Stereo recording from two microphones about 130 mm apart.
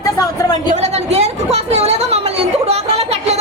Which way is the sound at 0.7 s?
55° right (ahead or behind).